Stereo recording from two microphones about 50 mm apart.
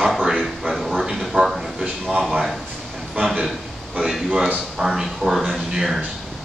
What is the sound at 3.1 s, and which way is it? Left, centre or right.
Speech, right.